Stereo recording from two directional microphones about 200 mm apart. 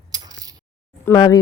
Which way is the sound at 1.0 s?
15° left (ahead or behind).